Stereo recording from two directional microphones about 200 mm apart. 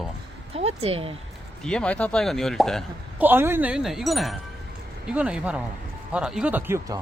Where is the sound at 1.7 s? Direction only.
5° left (ahead or behind).